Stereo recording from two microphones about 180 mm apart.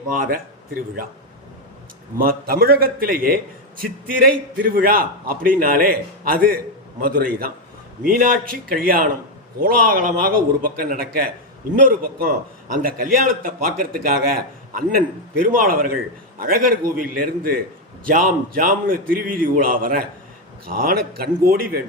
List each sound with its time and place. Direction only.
0.1 s a man's voice: 50° right (ahead or behind)
2.1 s a man's voice: 55° right (ahead or behind)